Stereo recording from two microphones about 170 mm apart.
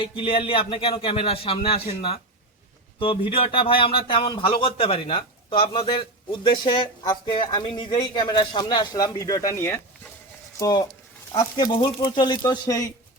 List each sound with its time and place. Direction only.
0.2 s a man's voice: 30° left (ahead or behind)